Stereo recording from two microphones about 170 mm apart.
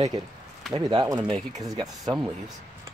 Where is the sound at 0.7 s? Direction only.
25° right (ahead or behind).